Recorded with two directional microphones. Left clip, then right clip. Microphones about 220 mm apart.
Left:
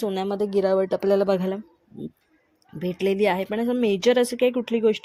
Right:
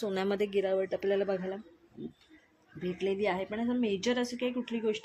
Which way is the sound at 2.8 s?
50° left (ahead or behind).